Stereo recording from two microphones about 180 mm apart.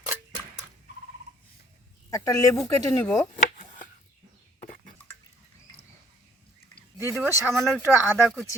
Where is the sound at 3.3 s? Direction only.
45° left (ahead or behind).